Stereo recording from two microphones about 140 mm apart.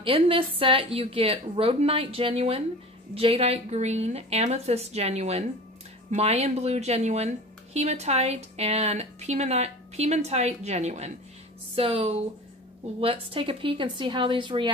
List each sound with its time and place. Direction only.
0.0 s speech: 40° right (ahead or behind); by 11.1 s 55° right (ahead or behind)
11.7 s speech: 45° right (ahead or behind)